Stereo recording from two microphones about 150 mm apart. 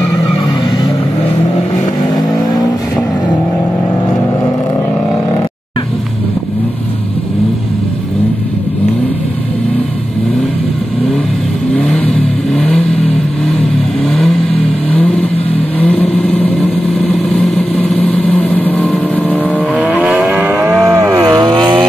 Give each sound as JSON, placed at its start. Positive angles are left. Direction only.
{"t": 11.7, "sound": "vehicle", "side_deg": 5}
{"t": 15.8, "sound": "vehicle", "side_deg": 10}
{"t": 20.8, "sound": "cattle", "side_deg": -20}